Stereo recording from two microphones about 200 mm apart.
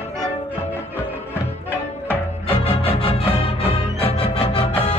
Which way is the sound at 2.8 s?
30° left (ahead or behind).